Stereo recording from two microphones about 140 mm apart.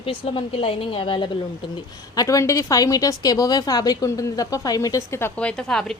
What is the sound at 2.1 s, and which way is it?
A woman's voice, 25° left (ahead or behind).